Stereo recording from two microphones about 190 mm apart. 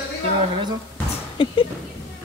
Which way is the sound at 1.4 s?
30° left (ahead or behind).